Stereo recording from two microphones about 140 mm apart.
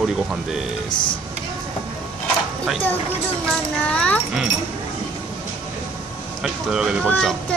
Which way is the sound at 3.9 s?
10° left (ahead or behind).